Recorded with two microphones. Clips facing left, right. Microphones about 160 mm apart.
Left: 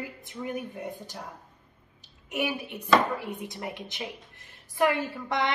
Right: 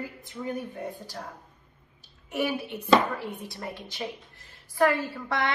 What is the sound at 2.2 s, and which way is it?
A woman's voice, 15° left (ahead or behind).